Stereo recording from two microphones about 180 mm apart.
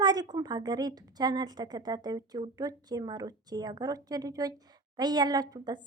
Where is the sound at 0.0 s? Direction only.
25° right (ahead or behind).